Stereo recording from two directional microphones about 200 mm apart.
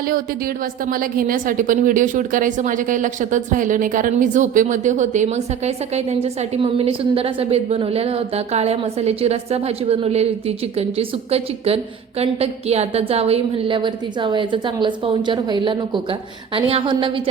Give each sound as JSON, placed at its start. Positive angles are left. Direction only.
{"t": 0.9, "sound": "a woman's voice", "side_deg": -45}